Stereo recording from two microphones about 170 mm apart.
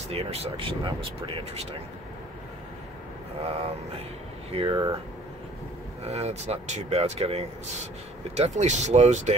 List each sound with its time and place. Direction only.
0.1 s speech: 35° right (ahead or behind)
3.4 s speech: 35° right (ahead or behind)
6.0 s speech: 40° right (ahead or behind)